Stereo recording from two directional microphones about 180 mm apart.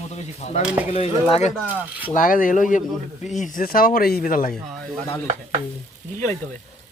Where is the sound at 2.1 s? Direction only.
50° left (ahead or behind).